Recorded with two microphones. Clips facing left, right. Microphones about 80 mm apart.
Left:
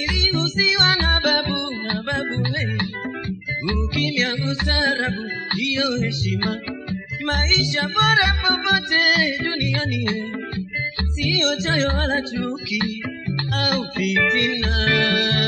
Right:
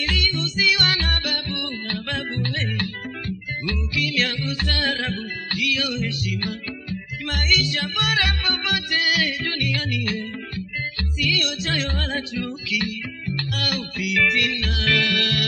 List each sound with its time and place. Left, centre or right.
0.2 s music: left
9.2 s music: left